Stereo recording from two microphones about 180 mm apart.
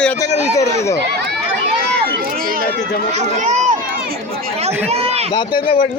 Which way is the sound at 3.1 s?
40° right (ahead or behind).